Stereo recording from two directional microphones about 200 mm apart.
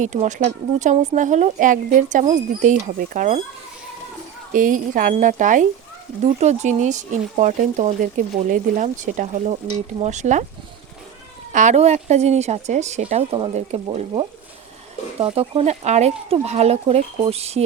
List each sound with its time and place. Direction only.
0.0 s speech: 35° right (ahead or behind)
4.5 s speech: 40° right (ahead or behind)
11.5 s speech: 35° right (ahead or behind)